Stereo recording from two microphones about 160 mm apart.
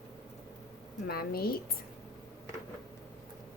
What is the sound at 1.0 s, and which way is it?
Speech, 75° left (ahead or behind).